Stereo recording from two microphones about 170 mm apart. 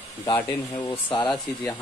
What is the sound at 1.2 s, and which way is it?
Speech, 10° left (ahead or behind).